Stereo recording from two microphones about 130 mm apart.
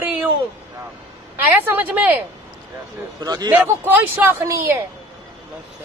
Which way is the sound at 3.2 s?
30° right (ahead or behind).